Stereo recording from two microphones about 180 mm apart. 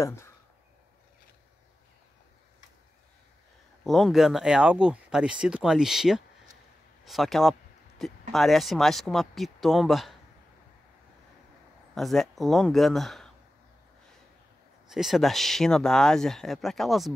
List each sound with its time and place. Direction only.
0.0 s speech: 15° left (ahead or behind)
3.8 s speech: centre (ahead or behind)
11.9 s speech: centre (ahead or behind)
14.9 s speech: centre (ahead or behind)